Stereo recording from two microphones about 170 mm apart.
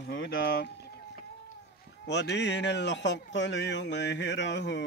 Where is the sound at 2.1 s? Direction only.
85° left.